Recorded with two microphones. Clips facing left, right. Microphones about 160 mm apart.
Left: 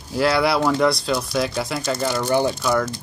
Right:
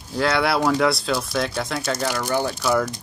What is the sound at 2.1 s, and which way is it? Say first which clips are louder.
Speech: left 4 dB; 15° left (ahead or behind).